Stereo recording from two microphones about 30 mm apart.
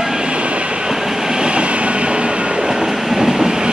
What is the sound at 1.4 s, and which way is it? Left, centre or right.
Train, right.